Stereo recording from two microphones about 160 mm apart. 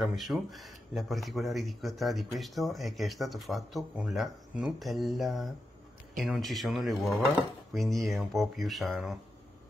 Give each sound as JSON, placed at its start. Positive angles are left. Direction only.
{"t": 0.0, "sound": "speech", "side_deg": 0}